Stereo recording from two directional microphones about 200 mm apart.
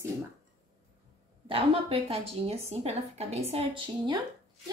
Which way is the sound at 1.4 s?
30° right (ahead or behind).